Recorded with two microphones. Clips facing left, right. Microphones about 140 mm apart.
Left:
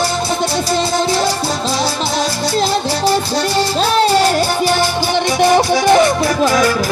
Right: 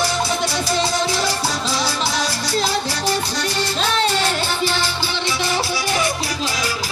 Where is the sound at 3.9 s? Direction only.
40° left (ahead or behind).